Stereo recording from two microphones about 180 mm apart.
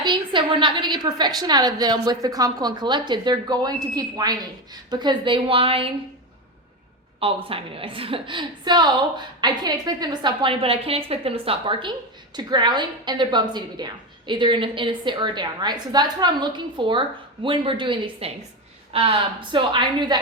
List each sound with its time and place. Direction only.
0.0 s a woman's voice: 25° right (ahead or behind)
7.4 s a woman's voice: 30° right (ahead or behind)